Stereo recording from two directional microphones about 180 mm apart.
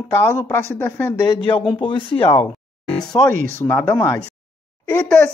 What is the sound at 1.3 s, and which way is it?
Speech, 25° left (ahead or behind).